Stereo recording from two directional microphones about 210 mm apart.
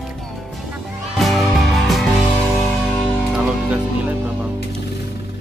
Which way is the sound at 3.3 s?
5° right (ahead or behind).